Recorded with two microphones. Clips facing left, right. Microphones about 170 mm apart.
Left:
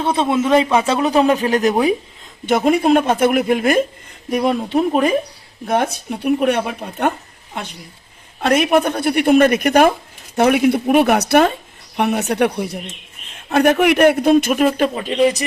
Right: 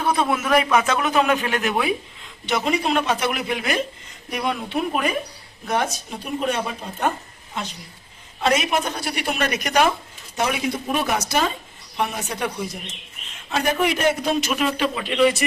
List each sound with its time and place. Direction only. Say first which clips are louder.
0.0 s a man's voice: left 5 dB; 25° left (ahead or behind)
2.5 s a man's voice: left 8 dB; 50° left (ahead or behind)
4.4 s a man's voice: left 8 dB; 40° left (ahead or behind)
5.6 s speech: left 5 dB; 55° left (ahead or behind)
8.4 s a man's voice: left 6 dB; 55° left (ahead or behind); by 15.4 s 40° left (ahead or behind)